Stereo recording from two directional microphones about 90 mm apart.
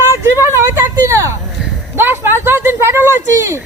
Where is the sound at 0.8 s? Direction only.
30° right (ahead or behind).